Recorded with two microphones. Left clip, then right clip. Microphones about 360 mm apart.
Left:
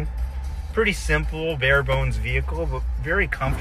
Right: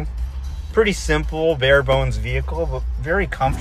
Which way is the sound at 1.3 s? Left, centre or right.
Right.